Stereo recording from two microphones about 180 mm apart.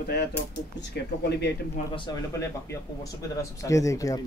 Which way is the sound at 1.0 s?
65° left (ahead or behind).